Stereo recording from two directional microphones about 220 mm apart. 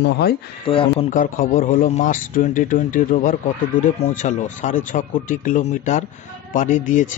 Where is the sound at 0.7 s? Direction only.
25° left (ahead or behind).